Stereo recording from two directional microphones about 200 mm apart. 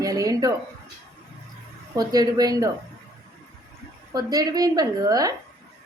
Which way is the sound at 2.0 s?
20° right (ahead or behind).